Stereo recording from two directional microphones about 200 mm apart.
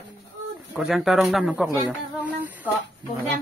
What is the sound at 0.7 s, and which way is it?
A man's voice, centre (ahead or behind).